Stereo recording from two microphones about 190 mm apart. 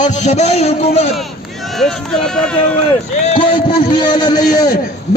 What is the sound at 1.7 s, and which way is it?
Speech, 5° left (ahead or behind).